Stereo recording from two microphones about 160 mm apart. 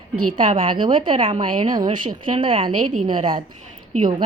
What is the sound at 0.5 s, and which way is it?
A woman's voice, 35° right (ahead or behind).